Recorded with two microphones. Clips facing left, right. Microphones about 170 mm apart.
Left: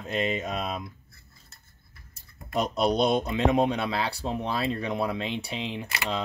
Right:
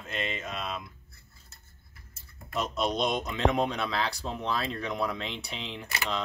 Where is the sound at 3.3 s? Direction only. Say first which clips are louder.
Left 4 dB; 10° left (ahead or behind).